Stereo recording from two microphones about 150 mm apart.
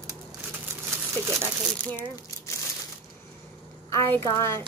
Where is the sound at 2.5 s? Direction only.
20° left (ahead or behind).